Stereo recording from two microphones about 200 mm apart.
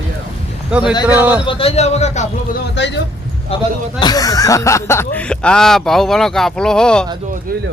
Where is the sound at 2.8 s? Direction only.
60° left (ahead or behind).